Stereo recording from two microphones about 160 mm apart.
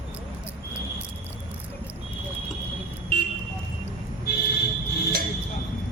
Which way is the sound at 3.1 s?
75° left (ahead or behind).